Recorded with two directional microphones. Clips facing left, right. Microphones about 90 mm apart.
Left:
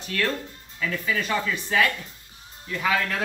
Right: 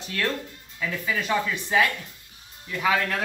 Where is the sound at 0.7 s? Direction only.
15° right (ahead or behind).